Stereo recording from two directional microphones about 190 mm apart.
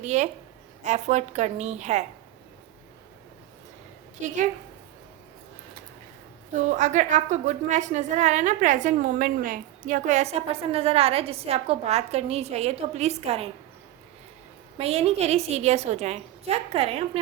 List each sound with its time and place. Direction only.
0.0 s a woman's voice: 40° right (ahead or behind)
6.7 s a woman's voice: 40° right (ahead or behind)
14.8 s a woman's voice: 35° right (ahead or behind)